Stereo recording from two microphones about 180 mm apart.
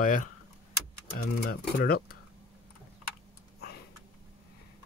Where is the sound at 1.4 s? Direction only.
60° left (ahead or behind).